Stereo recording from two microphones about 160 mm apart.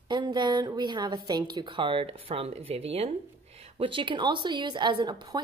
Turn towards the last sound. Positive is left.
turn(degrees=-25)  # may be behind; listen again after turning